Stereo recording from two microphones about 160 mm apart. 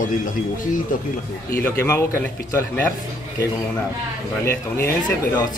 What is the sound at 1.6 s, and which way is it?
Speech, 15° left (ahead or behind).